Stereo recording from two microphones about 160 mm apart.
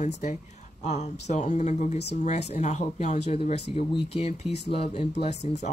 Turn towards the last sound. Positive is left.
turn(degrees=45)  # may be behind; listen again after turning